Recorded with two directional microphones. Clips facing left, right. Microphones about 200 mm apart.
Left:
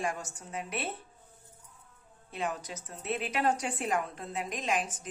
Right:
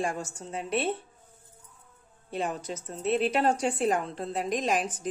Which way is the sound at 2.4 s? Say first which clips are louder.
Right 4 dB; 30° right (ahead or behind).